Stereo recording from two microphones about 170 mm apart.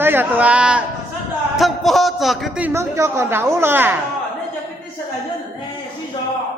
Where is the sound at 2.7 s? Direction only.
15° right (ahead or behind).